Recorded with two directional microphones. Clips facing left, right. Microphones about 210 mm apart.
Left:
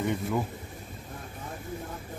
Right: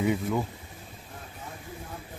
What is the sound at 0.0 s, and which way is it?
Speech, 5° right (ahead or behind).